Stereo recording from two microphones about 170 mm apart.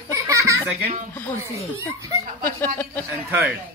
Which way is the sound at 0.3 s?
20° right (ahead or behind).